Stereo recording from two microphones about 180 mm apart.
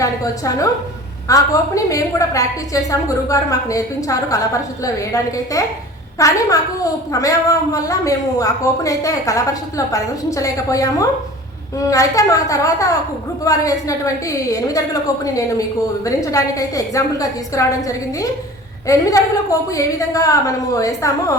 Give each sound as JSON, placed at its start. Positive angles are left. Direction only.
{"t": 0.0, "sound": "a woman's voice", "side_deg": 20}